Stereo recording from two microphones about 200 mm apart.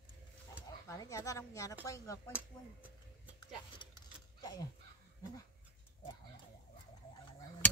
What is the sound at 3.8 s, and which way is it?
Mechanisms, 25° left (ahead or behind).